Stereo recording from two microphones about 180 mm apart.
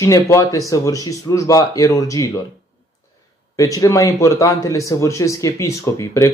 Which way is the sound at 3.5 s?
20° left (ahead or behind).